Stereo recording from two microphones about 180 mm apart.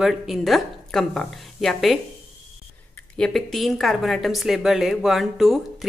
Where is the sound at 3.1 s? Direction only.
Centre (ahead or behind).